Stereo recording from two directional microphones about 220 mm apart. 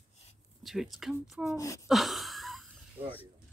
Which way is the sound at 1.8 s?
Centre (ahead or behind).